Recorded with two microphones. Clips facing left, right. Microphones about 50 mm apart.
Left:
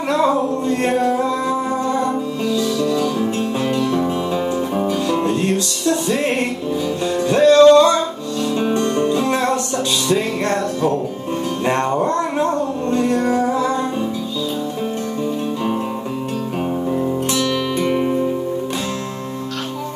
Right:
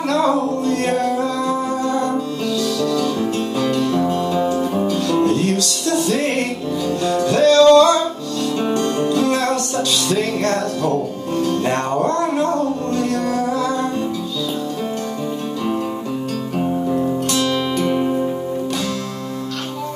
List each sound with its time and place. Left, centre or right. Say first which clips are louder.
0.1 s music: left 1 dB; left
17.8 s music: left 1 dB; left